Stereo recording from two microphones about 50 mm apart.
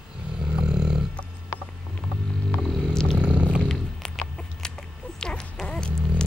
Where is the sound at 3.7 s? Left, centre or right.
Centre.